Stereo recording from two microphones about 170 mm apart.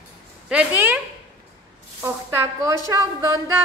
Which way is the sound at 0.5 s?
10° right (ahead or behind).